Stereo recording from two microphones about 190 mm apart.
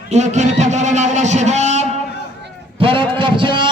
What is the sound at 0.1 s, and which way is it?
Music, 35° right (ahead or behind).